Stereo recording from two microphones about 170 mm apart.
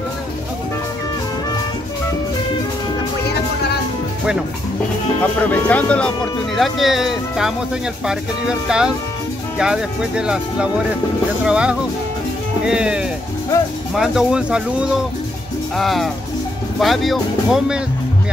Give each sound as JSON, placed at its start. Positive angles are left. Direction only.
{"t": 3.3, "sound": "music", "side_deg": 70}
{"t": 5.2, "sound": "speech", "side_deg": 10}